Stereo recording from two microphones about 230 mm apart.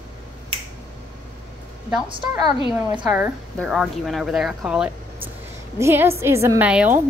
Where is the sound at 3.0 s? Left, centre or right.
Centre.